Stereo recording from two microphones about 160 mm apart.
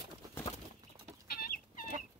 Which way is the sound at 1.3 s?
70° left (ahead or behind).